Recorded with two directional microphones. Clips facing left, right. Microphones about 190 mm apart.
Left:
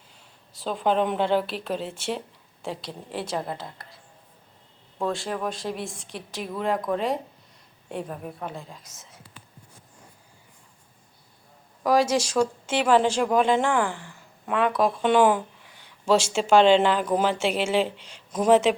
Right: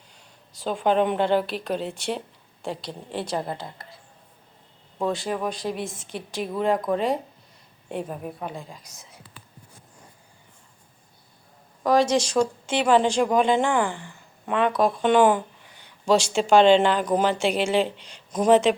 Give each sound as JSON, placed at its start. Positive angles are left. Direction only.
{"t": 0.5, "sound": "speech", "side_deg": 0}
{"t": 11.8, "sound": "speech", "side_deg": 5}